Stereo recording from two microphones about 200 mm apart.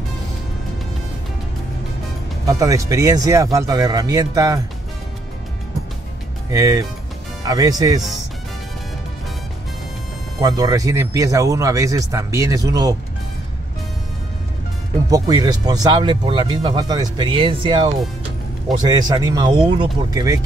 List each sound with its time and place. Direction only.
2.4 s a man's voice: 15° right (ahead or behind)
6.5 s a man's voice: 15° right (ahead or behind)
10.4 s a man's voice: 15° right (ahead or behind)
15.0 s speech: 20° right (ahead or behind)